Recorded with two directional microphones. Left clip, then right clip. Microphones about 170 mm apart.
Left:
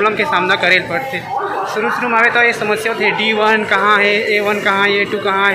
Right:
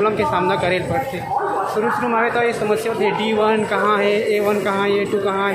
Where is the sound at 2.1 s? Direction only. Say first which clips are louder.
Left 10 dB; 5° right (ahead or behind).